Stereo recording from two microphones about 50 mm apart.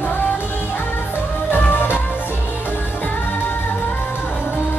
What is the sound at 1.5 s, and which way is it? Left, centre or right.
Music, left.